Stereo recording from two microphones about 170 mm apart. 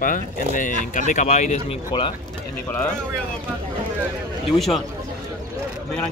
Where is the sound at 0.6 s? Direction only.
50° left (ahead or behind).